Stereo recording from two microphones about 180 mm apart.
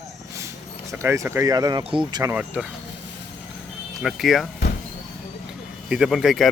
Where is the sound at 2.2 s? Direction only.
10° right (ahead or behind).